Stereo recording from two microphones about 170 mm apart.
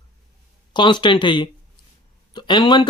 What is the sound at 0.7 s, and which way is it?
Speech, 25° left (ahead or behind).